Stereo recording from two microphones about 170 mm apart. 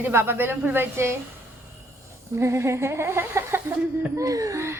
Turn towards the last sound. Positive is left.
turn(degrees=-15)  # may be behind; listen again after turning